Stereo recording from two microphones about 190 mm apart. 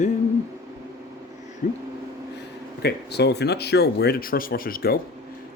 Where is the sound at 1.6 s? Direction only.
45° left (ahead or behind).